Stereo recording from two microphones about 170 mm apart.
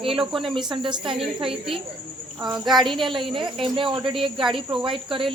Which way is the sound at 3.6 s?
30° right (ahead or behind).